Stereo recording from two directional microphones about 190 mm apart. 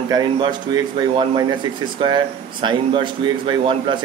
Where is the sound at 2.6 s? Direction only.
25° right (ahead or behind).